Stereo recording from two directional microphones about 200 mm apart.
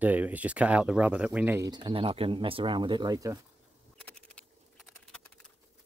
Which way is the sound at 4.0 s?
5° left (ahead or behind).